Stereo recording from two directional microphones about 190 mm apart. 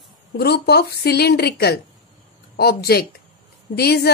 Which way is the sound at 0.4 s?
60° left (ahead or behind).